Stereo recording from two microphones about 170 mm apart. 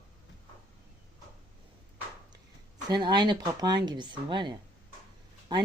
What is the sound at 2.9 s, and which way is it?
Speech, 25° right (ahead or behind).